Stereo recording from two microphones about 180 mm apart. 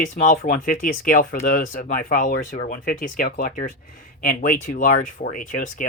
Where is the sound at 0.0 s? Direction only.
50° left (ahead or behind).